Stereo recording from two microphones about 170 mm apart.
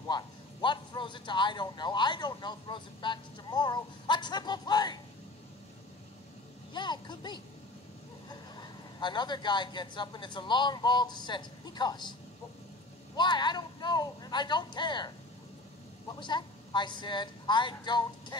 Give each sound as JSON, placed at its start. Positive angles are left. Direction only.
{"t": 0.1, "sound": "a man's voice", "side_deg": 25}
{"t": 6.7, "sound": "a man's voice", "side_deg": 25}
{"t": 16.2, "sound": "a man's voice", "side_deg": 25}